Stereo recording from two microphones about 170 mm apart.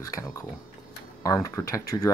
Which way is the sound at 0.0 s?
20° left (ahead or behind).